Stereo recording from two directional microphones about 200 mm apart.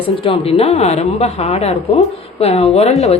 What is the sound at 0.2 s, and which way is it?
A woman's voice, 30° left (ahead or behind).